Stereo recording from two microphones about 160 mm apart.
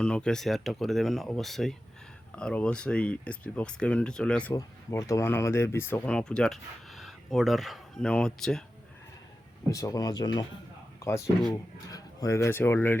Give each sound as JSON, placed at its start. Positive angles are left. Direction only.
{"t": 0.0, "sound": "speech", "side_deg": 5}
{"t": 4.5, "sound": "speech", "side_deg": 20}
{"t": 9.6, "sound": "speech", "side_deg": 20}
{"t": 11.9, "sound": "a man's voice", "side_deg": 20}